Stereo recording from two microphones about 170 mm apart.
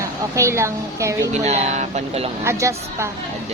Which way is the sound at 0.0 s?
15° right (ahead or behind).